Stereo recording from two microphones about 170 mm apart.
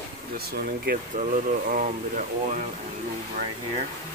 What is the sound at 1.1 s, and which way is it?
Speech, 45° right (ahead or behind).